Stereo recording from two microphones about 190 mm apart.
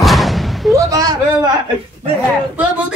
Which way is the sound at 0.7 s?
15° right (ahead or behind).